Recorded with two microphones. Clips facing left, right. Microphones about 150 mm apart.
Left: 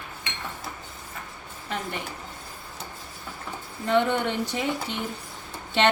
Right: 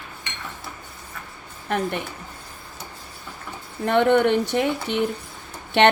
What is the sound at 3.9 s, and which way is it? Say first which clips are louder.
A woman's voice: right 6 dB; 60° right (ahead or behind).